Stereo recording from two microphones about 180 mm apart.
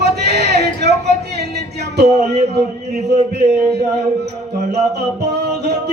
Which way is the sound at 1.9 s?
65° right (ahead or behind).